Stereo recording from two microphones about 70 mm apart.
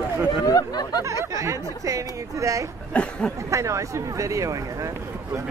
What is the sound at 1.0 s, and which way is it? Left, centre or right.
Speech, right.